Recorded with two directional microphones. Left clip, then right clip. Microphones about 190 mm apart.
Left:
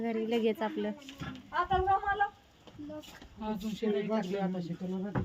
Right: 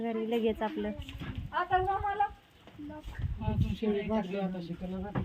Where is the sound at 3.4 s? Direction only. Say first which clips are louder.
Even; 30° left (ahead or behind).